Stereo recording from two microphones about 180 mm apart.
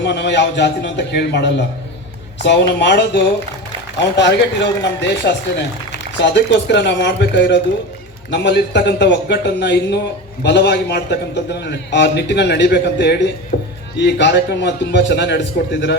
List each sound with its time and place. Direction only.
0.0 s a man's voice: 70° left (ahead or behind)